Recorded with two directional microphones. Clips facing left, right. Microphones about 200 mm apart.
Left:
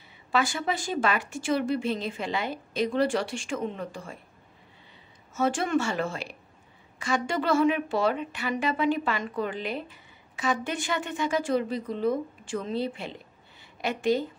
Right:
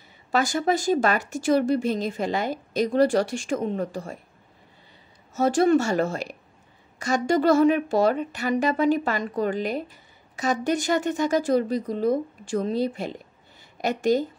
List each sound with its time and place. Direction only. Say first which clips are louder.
0.3 s speech: right 5 dB; 40° right (ahead or behind)
5.3 s speech: right 6 dB; 40° right (ahead or behind)